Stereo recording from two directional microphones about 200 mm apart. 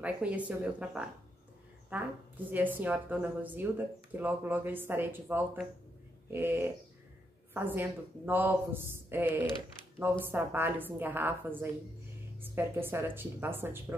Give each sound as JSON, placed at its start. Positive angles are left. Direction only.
{"t": 0.0, "sound": "a woman's voice", "side_deg": -5}